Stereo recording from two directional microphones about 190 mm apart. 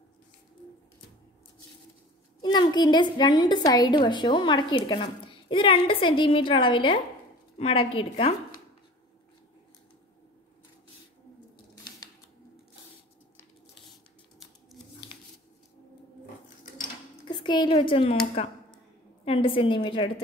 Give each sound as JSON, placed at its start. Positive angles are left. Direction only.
{"t": 2.4, "sound": "a woman's voice", "side_deg": 20}
{"t": 11.7, "sound": "a sound", "side_deg": 20}
{"t": 17.2, "sound": "a woman's voice", "side_deg": 25}